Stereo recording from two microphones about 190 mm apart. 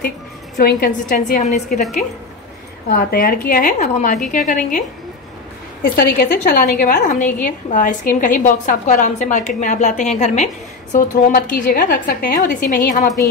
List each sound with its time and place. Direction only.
0.6 s a woman's voice: 55° left (ahead or behind)
1.4 s a woman's voice: 40° left (ahead or behind)
2.9 s a woman's voice: 50° left (ahead or behind)
5.8 s a woman's voice: 55° left (ahead or behind)
7.4 s a woman's voice: 45° left (ahead or behind)